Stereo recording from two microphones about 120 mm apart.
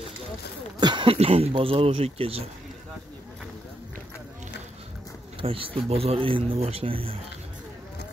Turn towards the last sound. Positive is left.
turn(degrees=-50)  # may be behind; listen again after turning